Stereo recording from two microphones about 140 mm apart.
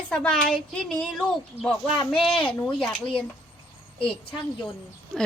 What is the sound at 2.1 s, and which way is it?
Speech, 40° left (ahead or behind).